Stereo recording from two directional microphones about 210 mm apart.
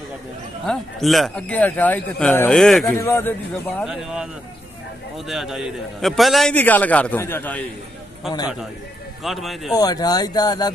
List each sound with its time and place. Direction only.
0.7 s a man's voice: centre (ahead or behind)
3.8 s a man's voice: centre (ahead or behind)
9.8 s speech: 20° left (ahead or behind)